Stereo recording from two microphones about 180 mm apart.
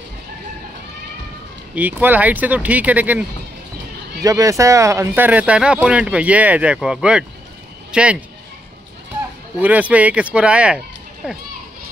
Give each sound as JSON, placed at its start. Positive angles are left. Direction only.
{"t": 1.8, "sound": "speech", "side_deg": -10}
{"t": 4.2, "sound": "speech", "side_deg": -20}
{"t": 9.6, "sound": "a child's voice", "side_deg": -10}